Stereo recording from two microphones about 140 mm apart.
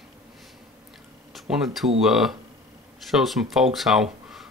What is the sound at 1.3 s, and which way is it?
Speech, centre (ahead or behind).